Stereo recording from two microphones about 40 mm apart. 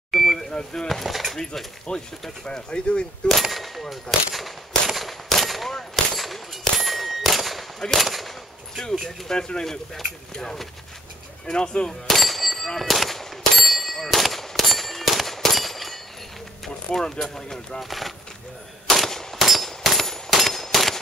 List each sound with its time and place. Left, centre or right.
0.1 s a sound: centre
0.5 s speech: centre
0.8 s speech: centre
1.9 s speech: left
3.3 s a sound: centre
3.9 s gunshot: centre
6.1 s clang: centre
7.9 s speech: centre
8.8 s speech: centre
12.1 s clang: centre
16.6 s speech: centre
17.8 s speech: centre
18.9 s machine gun: centre
19.3 s a sound: centre